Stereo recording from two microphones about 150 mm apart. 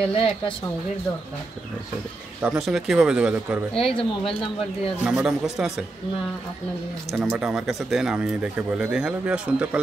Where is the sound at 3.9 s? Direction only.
35° left (ahead or behind).